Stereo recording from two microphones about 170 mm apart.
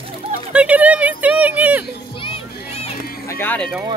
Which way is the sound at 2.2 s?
35° left (ahead or behind).